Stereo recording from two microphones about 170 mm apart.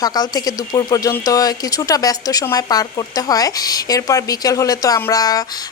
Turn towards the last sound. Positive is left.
turn(degrees=20)  # may be behind; listen again after turning